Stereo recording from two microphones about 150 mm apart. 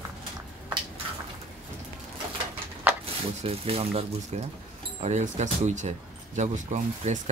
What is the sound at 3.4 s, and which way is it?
Speech, 40° right (ahead or behind).